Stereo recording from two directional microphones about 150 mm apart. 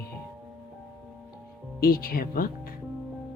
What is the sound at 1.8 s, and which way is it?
Speech, 75° left (ahead or behind).